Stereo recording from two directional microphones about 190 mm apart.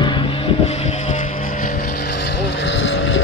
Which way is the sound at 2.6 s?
85° left.